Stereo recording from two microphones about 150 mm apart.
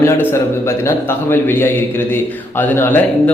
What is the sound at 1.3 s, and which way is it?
A man's voice, 15° left (ahead or behind).